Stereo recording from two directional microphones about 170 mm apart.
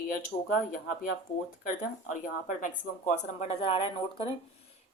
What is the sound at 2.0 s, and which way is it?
Speech, 50° left (ahead or behind).